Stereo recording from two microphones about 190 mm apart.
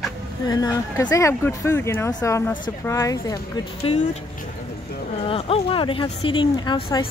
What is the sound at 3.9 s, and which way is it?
Speech, 30° left (ahead or behind).